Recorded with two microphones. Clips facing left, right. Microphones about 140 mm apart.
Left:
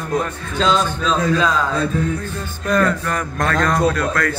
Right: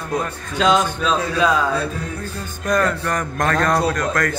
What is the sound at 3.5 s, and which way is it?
Speech, 30° right (ahead or behind).